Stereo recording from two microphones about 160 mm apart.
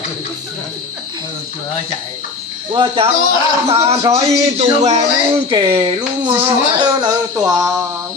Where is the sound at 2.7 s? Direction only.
35° right (ahead or behind).